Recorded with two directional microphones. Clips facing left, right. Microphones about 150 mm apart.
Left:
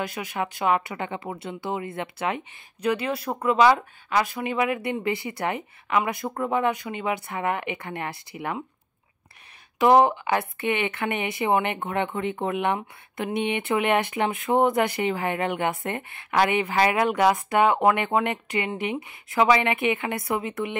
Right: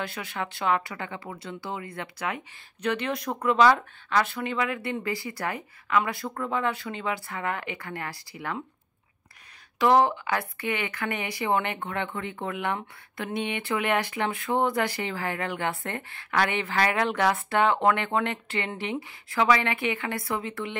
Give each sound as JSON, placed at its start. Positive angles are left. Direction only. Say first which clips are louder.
{"t": 0.0, "sound": "speech", "louder": "left 4 dB", "side_deg": 15}
{"t": 2.8, "sound": "speech", "louder": "left 3 dB", "side_deg": 10}
{"t": 9.8, "sound": "speech", "louder": "left 3 dB", "side_deg": 20}